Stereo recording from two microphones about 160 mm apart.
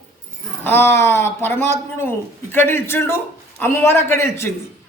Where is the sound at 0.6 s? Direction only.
15° left (ahead or behind).